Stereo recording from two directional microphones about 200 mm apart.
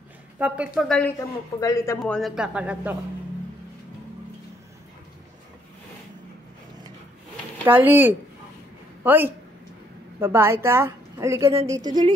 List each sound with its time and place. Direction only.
0.4 s speech: 5° right (ahead or behind)
1.6 s speech: 15° left (ahead or behind)
2.0 s speech: centre (ahead or behind)
7.6 s a woman's voice: 10° right (ahead or behind)